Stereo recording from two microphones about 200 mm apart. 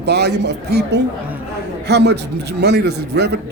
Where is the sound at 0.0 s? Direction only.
55° right (ahead or behind).